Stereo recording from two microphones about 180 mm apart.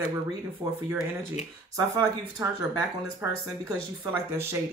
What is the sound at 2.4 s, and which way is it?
Speech, 15° right (ahead or behind).